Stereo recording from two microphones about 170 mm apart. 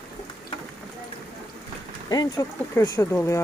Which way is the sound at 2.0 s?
20° left (ahead or behind).